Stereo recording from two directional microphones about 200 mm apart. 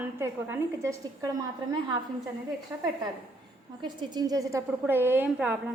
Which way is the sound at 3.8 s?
20° right (ahead or behind).